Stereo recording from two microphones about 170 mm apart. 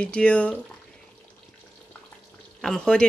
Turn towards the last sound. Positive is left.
turn(degrees=5)  # may be behind; listen again after turning